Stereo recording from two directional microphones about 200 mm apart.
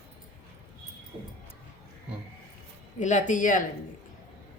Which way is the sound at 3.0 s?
40° left (ahead or behind).